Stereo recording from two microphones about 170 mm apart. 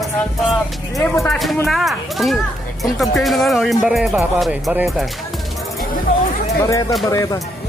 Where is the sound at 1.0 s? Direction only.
10° left (ahead or behind).